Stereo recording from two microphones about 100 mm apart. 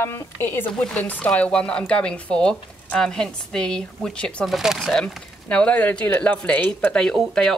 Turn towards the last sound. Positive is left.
turn(degrees=5)  # may be behind; listen again after turning